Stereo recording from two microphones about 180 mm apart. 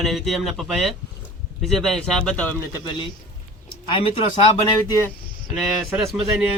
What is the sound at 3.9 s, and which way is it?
Speech, 30° left (ahead or behind).